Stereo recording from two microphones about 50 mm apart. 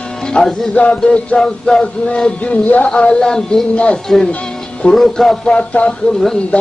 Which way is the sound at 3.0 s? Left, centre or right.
Centre.